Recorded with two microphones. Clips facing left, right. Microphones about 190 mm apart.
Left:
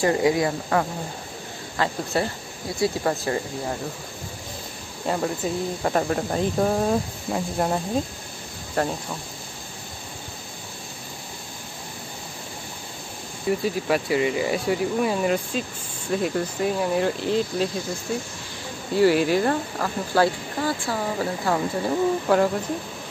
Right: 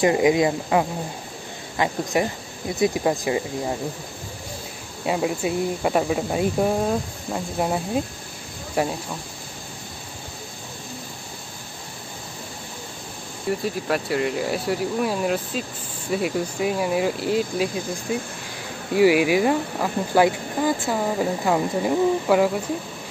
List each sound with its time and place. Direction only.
0.0 s speech: 20° right (ahead or behind)
5.0 s speech: 10° right (ahead or behind)
13.5 s speech: centre (ahead or behind)